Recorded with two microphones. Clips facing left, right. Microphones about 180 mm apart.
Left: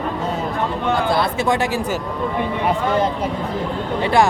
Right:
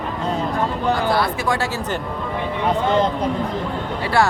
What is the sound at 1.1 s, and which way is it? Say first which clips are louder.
Speech: left 2 dB; 25° left (ahead or behind).